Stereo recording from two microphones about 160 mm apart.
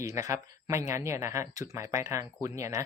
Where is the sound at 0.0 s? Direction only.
20° right (ahead or behind).